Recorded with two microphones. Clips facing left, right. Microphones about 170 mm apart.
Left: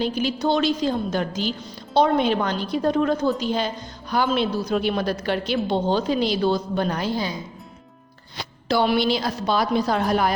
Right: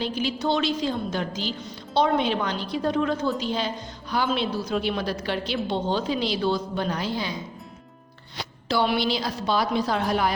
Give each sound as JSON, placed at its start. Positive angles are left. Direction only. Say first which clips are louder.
{"t": 0.0, "sound": "a woman's voice", "louder": "left 3 dB", "side_deg": 45}
{"t": 8.6, "sound": "a woman's voice", "louder": "left 3 dB", "side_deg": 45}